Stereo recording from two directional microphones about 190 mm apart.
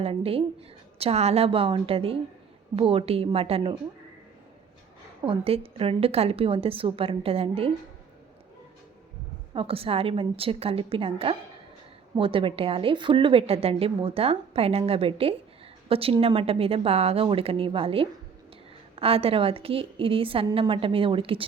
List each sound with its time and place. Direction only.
0.0 s a woman's voice: 30° right (ahead or behind)
5.2 s a woman's voice: 30° right (ahead or behind)
9.6 s a woman's voice: 30° right (ahead or behind)